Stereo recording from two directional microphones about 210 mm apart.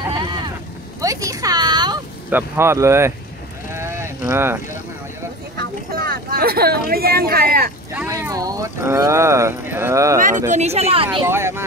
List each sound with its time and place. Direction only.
0.1 s boat: 20° right (ahead or behind)
1.0 s a sound: 15° right (ahead or behind)
2.3 s speech: 10° right (ahead or behind)
3.7 s sheep: 10° right (ahead or behind)
5.6 s a sound: 45° right (ahead or behind)
7.9 s speech: 10° right (ahead or behind)
10.5 s speech: 30° right (ahead or behind)
11.2 s speech: 10° right (ahead or behind)